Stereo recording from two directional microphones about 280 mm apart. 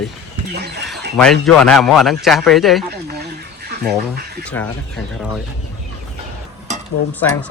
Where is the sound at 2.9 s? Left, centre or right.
Right.